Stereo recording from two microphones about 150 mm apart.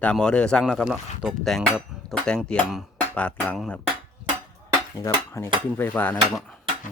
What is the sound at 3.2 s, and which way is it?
Stir, 5° left (ahead or behind).